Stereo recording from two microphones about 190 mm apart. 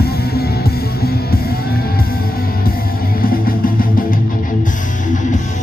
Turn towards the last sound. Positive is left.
turn(degrees=40)  # may be behind; listen again after turning